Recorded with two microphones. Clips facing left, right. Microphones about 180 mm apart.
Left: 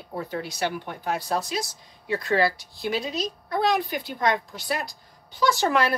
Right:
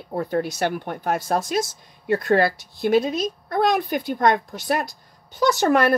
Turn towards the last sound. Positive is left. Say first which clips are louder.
# right 4 dB
turn(degrees=-50)  # may be behind; listen again after turning